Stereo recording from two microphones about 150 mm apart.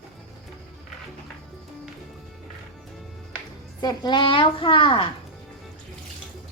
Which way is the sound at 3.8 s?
30° left (ahead or behind).